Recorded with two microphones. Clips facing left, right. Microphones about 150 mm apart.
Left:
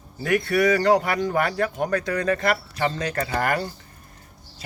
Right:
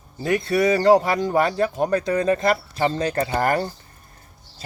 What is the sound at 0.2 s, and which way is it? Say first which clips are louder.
Speech: right 1 dB; 25° right (ahead or behind).